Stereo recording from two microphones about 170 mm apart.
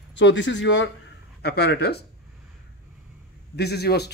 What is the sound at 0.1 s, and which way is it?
Speech, 90° left.